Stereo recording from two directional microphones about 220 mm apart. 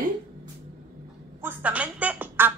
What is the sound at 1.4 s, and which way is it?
A woman's voice, 5° right (ahead or behind).